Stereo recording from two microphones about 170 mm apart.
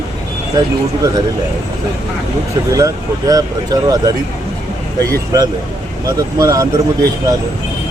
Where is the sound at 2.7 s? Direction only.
20° right (ahead or behind).